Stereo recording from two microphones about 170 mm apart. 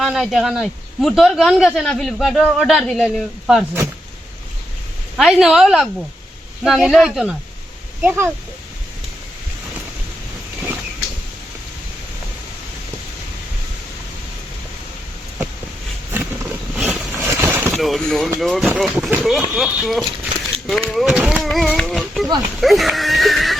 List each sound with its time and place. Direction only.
0.0 s speech: centre (ahead or behind)
5.1 s speech: 5° right (ahead or behind)
8.0 s speech: 15° right (ahead or behind)
16.1 s vehicle: 10° right (ahead or behind)
17.7 s speech: centre (ahead or behind)
22.6 s a sound: centre (ahead or behind)